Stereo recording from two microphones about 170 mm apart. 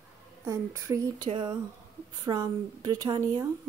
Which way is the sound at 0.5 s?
20° right (ahead or behind).